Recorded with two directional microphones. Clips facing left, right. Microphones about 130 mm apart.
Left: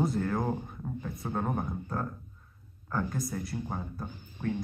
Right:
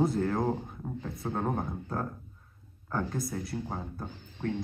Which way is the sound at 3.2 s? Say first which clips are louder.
Even; centre (ahead or behind).